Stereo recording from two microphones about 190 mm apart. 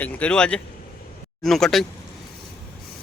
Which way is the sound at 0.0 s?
5° left (ahead or behind).